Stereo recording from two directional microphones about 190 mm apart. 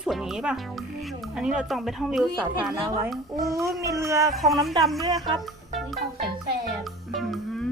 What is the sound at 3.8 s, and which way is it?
Speech, 15° right (ahead or behind).